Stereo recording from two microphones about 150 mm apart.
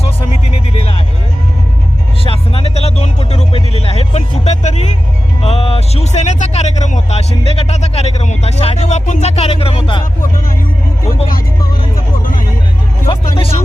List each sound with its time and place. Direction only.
0.7 s music: 40° left (ahead or behind)
2.2 s music: 40° left (ahead or behind)
5.4 s vehicle: 40° left (ahead or behind)
11.3 s music: 70° left (ahead or behind)
13.1 s music: 35° left (ahead or behind)